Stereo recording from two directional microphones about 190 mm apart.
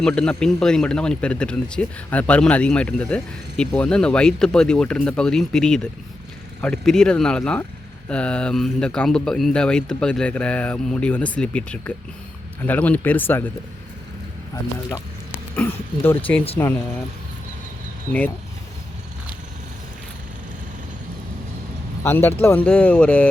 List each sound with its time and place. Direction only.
0.0 s speech: 5° left (ahead or behind)
14.5 s speech: 15° left (ahead or behind)
22.0 s speech: 10° left (ahead or behind)